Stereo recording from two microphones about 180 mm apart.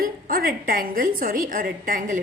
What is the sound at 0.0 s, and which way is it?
A woman's voice, 55° right (ahead or behind).